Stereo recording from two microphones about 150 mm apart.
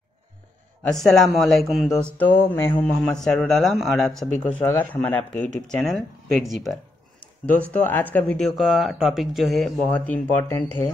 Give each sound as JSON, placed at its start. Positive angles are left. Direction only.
{"t": 0.8, "sound": "speech", "side_deg": 5}
{"t": 2.3, "sound": "speech", "side_deg": 15}
{"t": 7.7, "sound": "speech", "side_deg": 10}